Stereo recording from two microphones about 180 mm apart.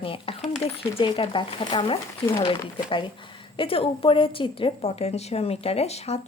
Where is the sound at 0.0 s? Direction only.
30° left (ahead or behind).